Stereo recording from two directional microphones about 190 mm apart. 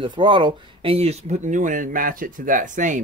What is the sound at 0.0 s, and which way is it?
Speech, 25° right (ahead or behind).